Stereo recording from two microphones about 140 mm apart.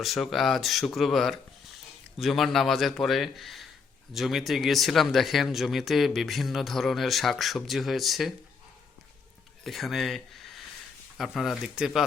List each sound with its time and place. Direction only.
0.0 s speech: centre (ahead or behind)
9.6 s speech: centre (ahead or behind)